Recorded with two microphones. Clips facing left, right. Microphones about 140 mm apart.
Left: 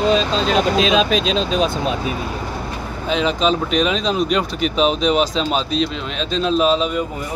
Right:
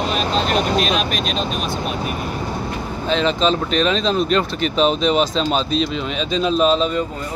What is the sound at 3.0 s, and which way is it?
Speech, 5° left (ahead or behind).